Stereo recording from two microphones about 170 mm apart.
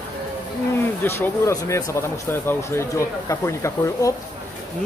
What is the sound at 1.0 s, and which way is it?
Speech, 15° left (ahead or behind).